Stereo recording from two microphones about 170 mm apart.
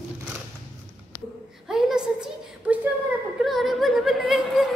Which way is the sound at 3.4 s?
Centre (ahead or behind).